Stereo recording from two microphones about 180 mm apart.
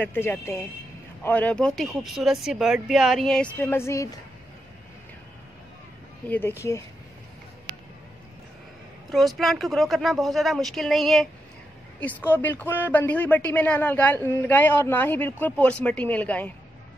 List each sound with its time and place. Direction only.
0.0 s speech: 10° left (ahead or behind)
6.2 s speech: 10° left (ahead or behind)
9.1 s speech: centre (ahead or behind)